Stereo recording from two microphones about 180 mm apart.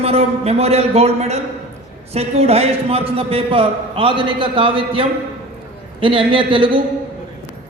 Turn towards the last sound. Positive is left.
turn(degrees=-30)  # may be behind; listen again after turning